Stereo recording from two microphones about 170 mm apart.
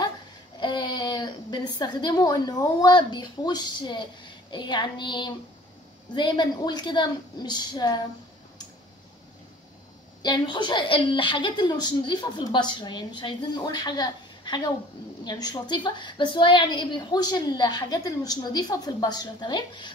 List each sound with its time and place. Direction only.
0.6 s a woman's voice: 25° left (ahead or behind)
10.2 s a woman's voice: 25° left (ahead or behind)